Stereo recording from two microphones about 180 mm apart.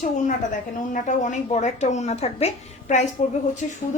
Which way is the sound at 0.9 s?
45° left (ahead or behind).